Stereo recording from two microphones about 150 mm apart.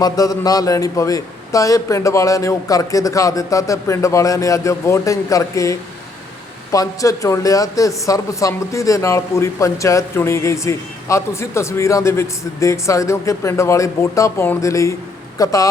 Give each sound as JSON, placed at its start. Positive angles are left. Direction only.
{"t": 0.0, "sound": "a man's voice", "side_deg": 25}